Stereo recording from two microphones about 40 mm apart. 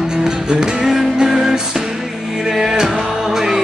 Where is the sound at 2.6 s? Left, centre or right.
Centre.